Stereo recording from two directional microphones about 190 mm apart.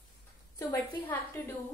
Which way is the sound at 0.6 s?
20° left (ahead or behind).